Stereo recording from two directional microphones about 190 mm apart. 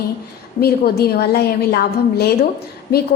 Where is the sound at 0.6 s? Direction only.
55° left (ahead or behind).